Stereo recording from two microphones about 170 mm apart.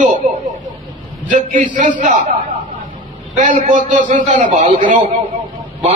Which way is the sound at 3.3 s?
50° right (ahead or behind).